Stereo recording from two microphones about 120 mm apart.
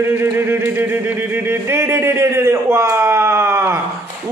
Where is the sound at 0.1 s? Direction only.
20° right (ahead or behind).